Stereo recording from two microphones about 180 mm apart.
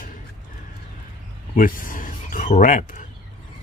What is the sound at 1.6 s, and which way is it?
Speech, 50° left (ahead or behind).